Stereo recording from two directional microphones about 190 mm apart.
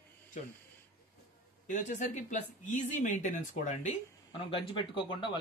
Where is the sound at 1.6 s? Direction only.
40° left (ahead or behind).